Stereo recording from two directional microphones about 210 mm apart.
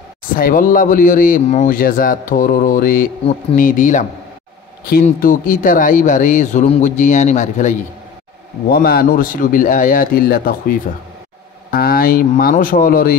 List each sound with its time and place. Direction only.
0.3 s speech: 40° left (ahead or behind)
5.0 s speech: 40° left (ahead or behind)
8.6 s speech: 45° left (ahead or behind)
11.7 s speech: 45° left (ahead or behind)